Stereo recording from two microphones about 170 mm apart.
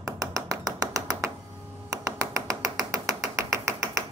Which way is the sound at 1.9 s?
20° right (ahead or behind).